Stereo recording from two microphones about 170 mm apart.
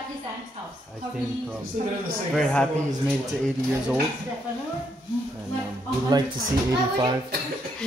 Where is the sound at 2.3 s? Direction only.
5° left (ahead or behind).